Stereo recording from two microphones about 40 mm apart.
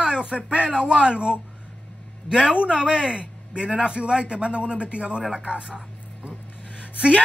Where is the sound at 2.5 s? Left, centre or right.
Right.